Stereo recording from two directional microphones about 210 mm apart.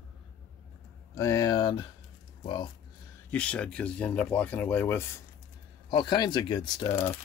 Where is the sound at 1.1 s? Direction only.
15° left (ahead or behind).